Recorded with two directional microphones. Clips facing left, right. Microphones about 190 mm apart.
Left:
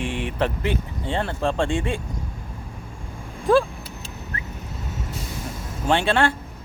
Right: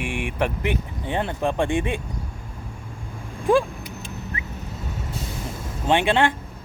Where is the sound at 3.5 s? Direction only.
15° right (ahead or behind).